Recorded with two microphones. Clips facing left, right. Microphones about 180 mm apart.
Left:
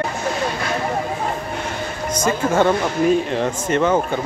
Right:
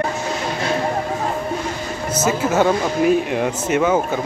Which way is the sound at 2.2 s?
5° right (ahead or behind).